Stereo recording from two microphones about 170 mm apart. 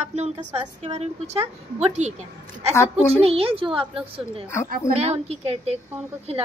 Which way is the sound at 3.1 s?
35° right (ahead or behind).